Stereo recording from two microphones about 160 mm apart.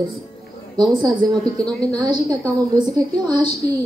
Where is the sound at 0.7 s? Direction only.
25° right (ahead or behind).